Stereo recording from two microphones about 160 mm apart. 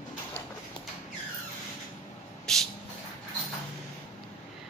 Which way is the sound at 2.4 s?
Centre (ahead or behind).